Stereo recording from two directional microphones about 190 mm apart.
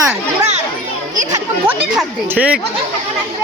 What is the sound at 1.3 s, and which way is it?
Speech, 5° right (ahead or behind).